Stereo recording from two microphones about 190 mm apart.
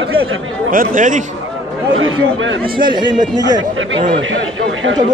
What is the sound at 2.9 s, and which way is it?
Speech, 25° right (ahead or behind).